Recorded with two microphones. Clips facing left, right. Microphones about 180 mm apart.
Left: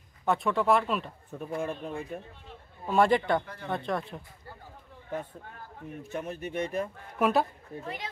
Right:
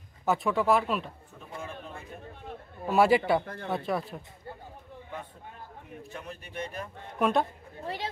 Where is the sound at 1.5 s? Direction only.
55° left (ahead or behind).